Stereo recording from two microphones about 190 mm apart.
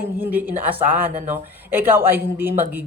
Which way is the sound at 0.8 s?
40° right (ahead or behind).